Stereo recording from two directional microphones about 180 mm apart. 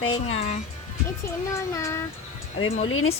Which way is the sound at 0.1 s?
35° left (ahead or behind).